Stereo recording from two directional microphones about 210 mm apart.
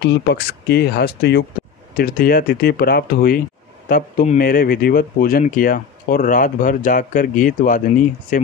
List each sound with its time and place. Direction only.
0.0 s speech: 55° left (ahead or behind); by 8.5 s 40° left (ahead or behind)